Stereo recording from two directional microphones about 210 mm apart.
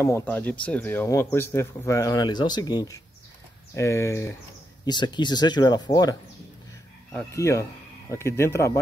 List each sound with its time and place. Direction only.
0.0 s a man's voice: 10° left (ahead or behind)
7.2 s a man's voice: 15° left (ahead or behind)